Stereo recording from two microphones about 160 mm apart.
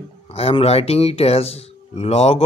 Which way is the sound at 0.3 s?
40° left (ahead or behind).